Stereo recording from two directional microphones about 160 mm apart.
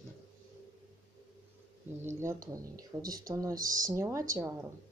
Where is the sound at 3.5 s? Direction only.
60° right (ahead or behind).